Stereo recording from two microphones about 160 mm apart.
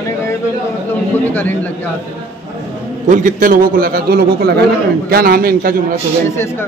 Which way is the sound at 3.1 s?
50° right (ahead or behind).